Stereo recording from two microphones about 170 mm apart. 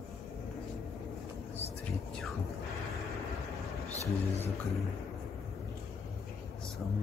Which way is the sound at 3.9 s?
40° left (ahead or behind).